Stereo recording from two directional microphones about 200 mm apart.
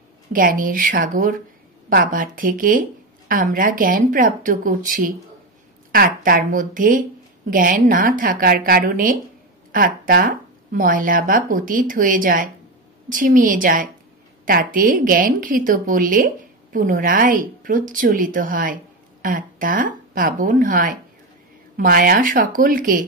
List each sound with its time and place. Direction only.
0.3 s a woman's voice: 45° right (ahead or behind)